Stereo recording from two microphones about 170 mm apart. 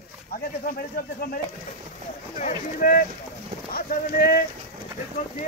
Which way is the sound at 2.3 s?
50° left (ahead or behind).